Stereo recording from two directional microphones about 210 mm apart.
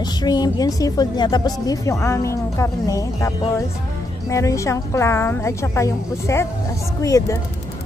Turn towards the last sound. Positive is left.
turn(degrees=15)  # may be behind; listen again after turning